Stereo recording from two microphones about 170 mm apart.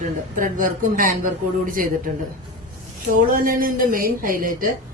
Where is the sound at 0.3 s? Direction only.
50° right (ahead or behind).